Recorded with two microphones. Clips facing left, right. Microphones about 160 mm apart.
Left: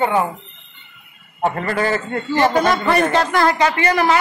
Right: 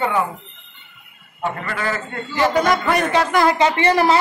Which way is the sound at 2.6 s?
15° right (ahead or behind).